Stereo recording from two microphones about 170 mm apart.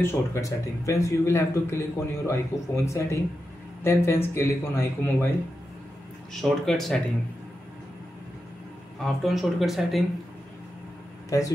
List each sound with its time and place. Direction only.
0.0 s speech: 20° left (ahead or behind)
6.3 s speech: centre (ahead or behind)
9.0 s speech: centre (ahead or behind)
11.2 s speech: 20° left (ahead or behind)